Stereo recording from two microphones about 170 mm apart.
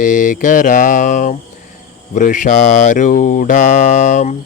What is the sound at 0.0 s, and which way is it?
Mantra, 50° left (ahead or behind).